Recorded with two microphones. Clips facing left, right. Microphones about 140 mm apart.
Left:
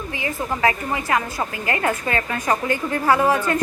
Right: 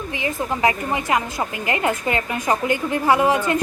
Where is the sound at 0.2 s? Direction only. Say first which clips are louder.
Right 1 dB; 20° right (ahead or behind).